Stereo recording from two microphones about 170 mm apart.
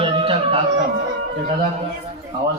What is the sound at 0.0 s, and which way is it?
Music, 30° right (ahead or behind).